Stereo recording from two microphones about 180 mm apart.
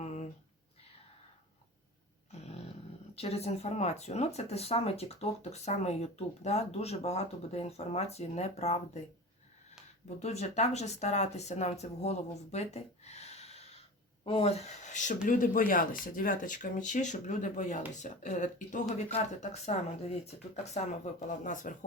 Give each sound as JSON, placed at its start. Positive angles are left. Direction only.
{"t": 0.0, "sound": "a sound", "side_deg": 40}
{"t": 3.2, "sound": "speech", "side_deg": 35}
{"t": 10.2, "sound": "speech", "side_deg": 35}